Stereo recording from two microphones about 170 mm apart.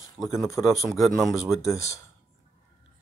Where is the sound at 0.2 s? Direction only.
Centre (ahead or behind).